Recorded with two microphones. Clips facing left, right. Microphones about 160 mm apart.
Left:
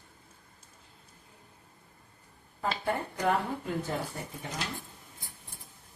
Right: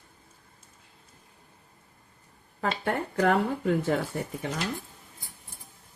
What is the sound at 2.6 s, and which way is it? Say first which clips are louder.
Speech: right 3 dB; 75° right (ahead or behind).